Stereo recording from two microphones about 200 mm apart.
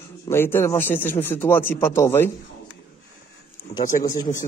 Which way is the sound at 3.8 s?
20° left (ahead or behind).